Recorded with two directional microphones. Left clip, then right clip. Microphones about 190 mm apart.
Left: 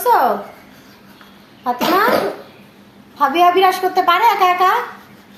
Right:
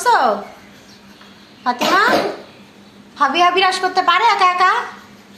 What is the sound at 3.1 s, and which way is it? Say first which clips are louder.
A woman's voice: left 1 dB; 25° left (ahead or behind).